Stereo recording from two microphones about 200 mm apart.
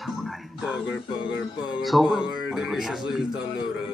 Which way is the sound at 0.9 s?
65° left (ahead or behind).